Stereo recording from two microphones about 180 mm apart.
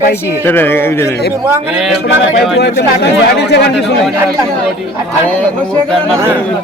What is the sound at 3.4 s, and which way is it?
Speech, 70° left (ahead or behind).